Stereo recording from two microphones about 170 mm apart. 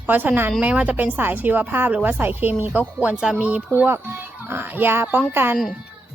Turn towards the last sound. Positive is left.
turn(degrees=-10)  # may be behind; listen again after turning